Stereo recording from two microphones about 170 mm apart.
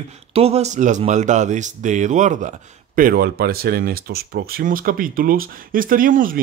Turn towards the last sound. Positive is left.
turn(degrees=-55)  # may be behind; listen again after turning